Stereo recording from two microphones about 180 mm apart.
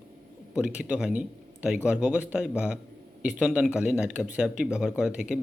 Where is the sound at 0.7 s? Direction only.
5° right (ahead or behind).